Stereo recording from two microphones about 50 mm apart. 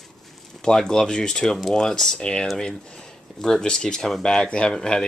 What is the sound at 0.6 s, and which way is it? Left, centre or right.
Speech, centre.